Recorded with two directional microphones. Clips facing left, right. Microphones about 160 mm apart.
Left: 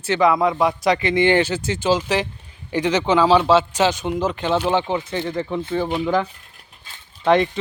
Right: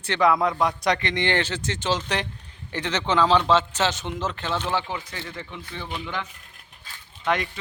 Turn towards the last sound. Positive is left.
turn(degrees=30)  # may be behind; listen again after turning